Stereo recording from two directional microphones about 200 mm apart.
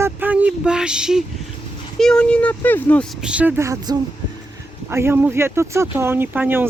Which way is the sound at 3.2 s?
5° right (ahead or behind).